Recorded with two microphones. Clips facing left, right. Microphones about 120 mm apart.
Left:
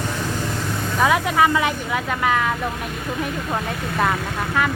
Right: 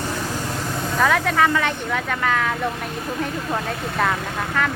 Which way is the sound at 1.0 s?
10° left (ahead or behind).